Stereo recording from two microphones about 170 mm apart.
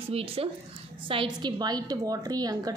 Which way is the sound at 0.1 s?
35° right (ahead or behind).